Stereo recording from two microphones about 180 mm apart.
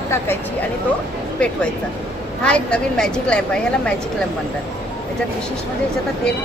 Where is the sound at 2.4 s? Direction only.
5° left (ahead or behind).